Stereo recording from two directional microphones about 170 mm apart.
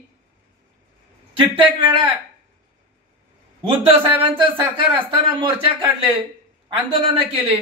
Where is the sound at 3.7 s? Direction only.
35° right (ahead or behind).